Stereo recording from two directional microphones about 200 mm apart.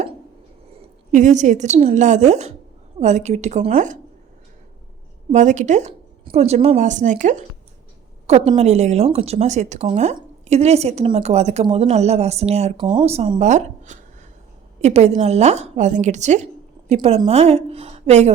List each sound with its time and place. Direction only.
0.8 s a woman's voice: 35° right (ahead or behind)
5.3 s speech: 35° right (ahead or behind)